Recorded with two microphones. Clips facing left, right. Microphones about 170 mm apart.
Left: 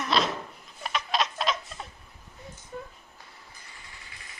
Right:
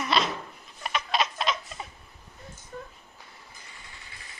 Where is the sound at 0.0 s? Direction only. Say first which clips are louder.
Even; centre (ahead or behind).